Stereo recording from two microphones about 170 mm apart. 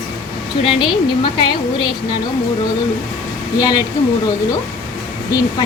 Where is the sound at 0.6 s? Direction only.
30° left (ahead or behind).